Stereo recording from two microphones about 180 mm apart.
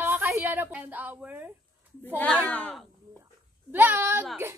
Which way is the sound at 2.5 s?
5° left (ahead or behind).